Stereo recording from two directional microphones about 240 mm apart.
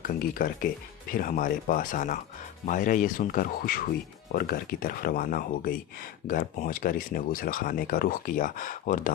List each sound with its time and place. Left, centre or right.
0.1 s speech: left